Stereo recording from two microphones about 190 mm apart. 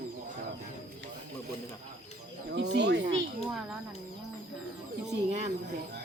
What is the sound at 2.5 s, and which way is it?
Speech, 65° right (ahead or behind).